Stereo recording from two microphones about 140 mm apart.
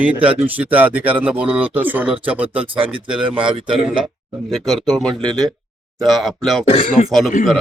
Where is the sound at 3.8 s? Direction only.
5° right (ahead or behind).